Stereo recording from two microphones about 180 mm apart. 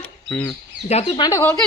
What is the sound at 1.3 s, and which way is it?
Speech, 15° left (ahead or behind).